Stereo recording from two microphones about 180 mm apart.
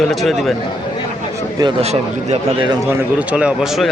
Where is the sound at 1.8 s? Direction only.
35° right (ahead or behind).